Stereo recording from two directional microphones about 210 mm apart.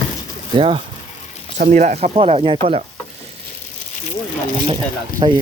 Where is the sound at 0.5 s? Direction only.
25° right (ahead or behind).